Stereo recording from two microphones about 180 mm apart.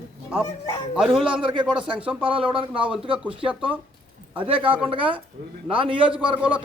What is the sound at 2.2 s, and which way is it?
Speech, 30° right (ahead or behind).